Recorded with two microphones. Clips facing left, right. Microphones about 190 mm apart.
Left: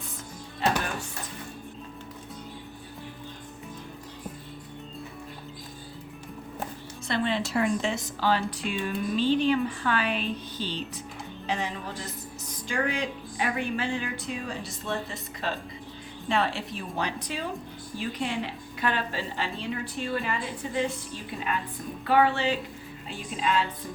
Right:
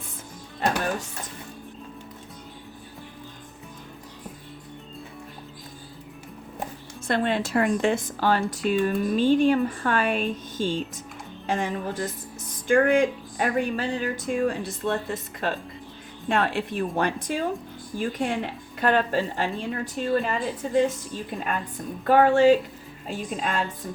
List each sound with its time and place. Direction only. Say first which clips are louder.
7.1 s speech: right 4 dB; 50° right (ahead or behind)